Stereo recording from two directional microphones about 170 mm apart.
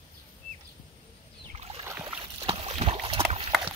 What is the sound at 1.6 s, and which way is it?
Rowboat, 35° right (ahead or behind).